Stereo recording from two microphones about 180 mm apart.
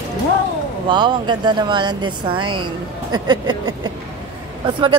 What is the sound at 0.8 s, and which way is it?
A woman's voice, 25° right (ahead or behind).